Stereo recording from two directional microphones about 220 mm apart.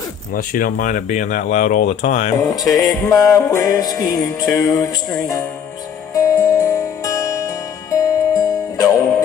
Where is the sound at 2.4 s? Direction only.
15° left (ahead or behind).